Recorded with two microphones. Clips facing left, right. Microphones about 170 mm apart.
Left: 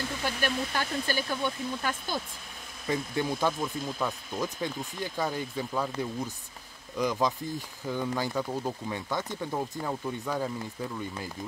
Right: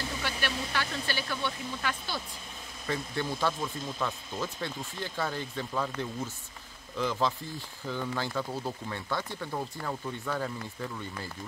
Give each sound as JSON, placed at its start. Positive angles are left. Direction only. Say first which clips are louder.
{"t": 0.2, "sound": "speech", "louder": "left 6 dB", "side_deg": 45}
{"t": 2.9, "sound": "speech", "louder": "left 3 dB", "side_deg": 15}